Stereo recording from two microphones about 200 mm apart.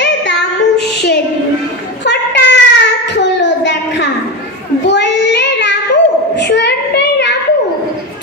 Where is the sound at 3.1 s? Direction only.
60° left (ahead or behind).